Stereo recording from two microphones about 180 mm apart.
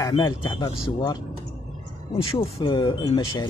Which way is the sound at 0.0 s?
25° left (ahead or behind).